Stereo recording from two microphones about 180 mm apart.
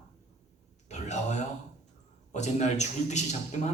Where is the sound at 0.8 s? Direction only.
40° left (ahead or behind).